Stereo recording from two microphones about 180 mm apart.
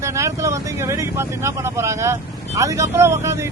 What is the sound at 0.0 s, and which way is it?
Speech, 15° right (ahead or behind).